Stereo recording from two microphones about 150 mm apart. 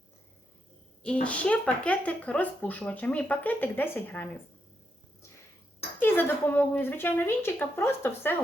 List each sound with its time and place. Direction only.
1.0 s speech: 10° left (ahead or behind)
6.0 s speech: 15° left (ahead or behind)